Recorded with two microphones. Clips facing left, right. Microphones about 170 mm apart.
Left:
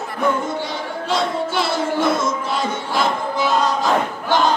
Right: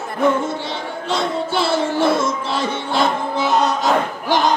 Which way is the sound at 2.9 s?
25° right (ahead or behind).